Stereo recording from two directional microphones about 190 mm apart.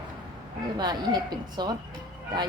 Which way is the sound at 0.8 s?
20° right (ahead or behind).